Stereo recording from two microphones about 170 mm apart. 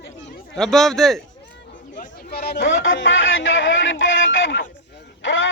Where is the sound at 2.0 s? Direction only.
65° left (ahead or behind); by 4.6 s 90° left.